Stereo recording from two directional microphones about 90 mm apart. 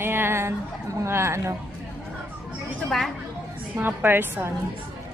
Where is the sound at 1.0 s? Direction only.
30° right (ahead or behind).